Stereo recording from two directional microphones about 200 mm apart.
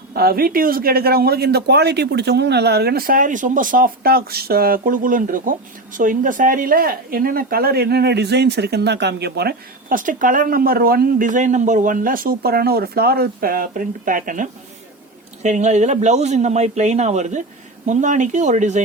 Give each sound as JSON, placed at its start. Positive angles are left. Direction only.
{"t": 0.1, "sound": "a man's voice", "side_deg": -50}